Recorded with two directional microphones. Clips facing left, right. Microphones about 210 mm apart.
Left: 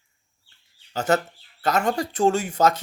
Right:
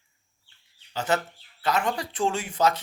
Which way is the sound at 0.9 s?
45° left (ahead or behind).